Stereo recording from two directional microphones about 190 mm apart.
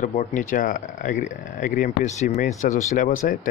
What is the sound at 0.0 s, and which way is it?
Speech, 40° left (ahead or behind).